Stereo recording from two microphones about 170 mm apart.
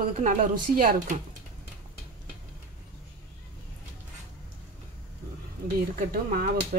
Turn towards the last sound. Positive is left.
turn(degrees=-60)  # may be behind; listen again after turning